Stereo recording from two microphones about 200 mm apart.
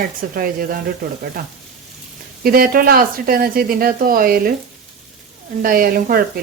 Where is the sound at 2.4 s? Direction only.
45° right (ahead or behind).